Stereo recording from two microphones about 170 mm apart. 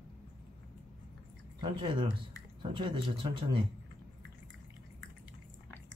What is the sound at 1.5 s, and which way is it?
Speech, 30° right (ahead or behind).